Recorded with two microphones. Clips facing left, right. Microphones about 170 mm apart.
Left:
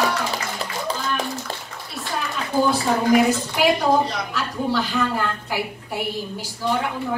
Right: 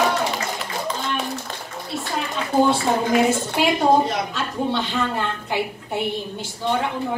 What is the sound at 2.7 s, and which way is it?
A woman's voice, 25° right (ahead or behind).